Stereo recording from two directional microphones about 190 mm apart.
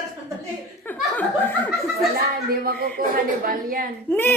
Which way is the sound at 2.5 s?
55° right (ahead or behind).